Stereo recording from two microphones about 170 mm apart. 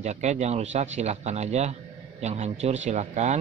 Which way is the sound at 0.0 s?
40° right (ahead or behind).